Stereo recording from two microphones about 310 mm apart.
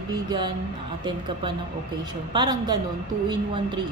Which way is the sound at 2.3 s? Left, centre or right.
Centre.